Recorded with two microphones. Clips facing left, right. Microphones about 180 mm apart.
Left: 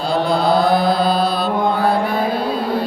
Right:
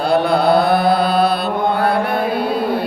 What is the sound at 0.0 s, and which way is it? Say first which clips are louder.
Mantra: right 3 dB; 65° right (ahead or behind).